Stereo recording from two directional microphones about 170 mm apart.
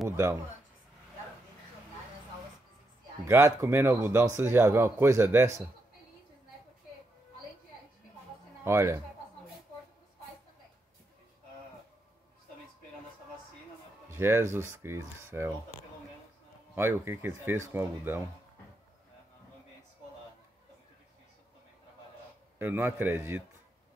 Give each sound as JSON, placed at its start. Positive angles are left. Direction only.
{"t": 3.3, "sound": "speech", "side_deg": -15}
{"t": 8.6, "sound": "speech", "side_deg": -15}
{"t": 14.0, "sound": "speech", "side_deg": -15}
{"t": 16.7, "sound": "speech", "side_deg": -15}
{"t": 22.6, "sound": "speech", "side_deg": -15}